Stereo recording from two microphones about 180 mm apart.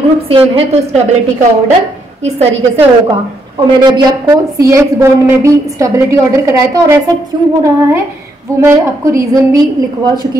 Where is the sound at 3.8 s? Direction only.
20° right (ahead or behind).